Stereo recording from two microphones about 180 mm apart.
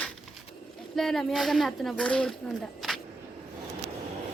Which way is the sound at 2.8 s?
Centre (ahead or behind).